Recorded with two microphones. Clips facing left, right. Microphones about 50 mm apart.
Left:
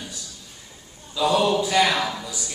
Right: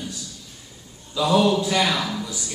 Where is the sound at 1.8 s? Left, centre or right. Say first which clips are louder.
Left 2 dB; centre.